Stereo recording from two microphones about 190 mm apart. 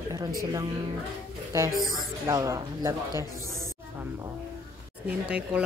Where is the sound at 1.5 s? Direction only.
15° right (ahead or behind).